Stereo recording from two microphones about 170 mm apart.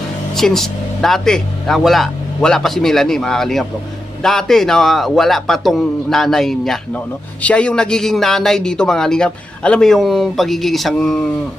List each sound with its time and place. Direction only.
0.3 s a man's voice: centre (ahead or behind)